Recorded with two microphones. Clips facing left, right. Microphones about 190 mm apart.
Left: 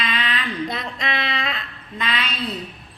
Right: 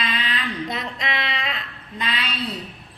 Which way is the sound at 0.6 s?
15° right (ahead or behind).